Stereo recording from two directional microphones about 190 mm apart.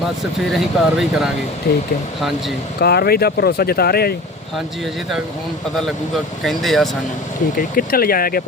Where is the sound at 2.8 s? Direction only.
55° left (ahead or behind).